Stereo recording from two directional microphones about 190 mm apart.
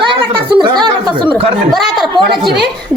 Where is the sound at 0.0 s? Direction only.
25° right (ahead or behind).